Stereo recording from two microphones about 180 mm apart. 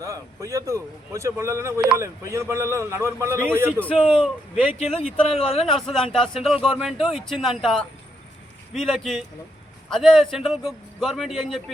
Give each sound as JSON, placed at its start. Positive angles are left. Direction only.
{"t": 0.0, "sound": "a man's voice", "side_deg": -15}
{"t": 3.8, "sound": "speech", "side_deg": 10}
{"t": 5.3, "sound": "a man's voice", "side_deg": 35}
{"t": 5.7, "sound": "a man's voice", "side_deg": 0}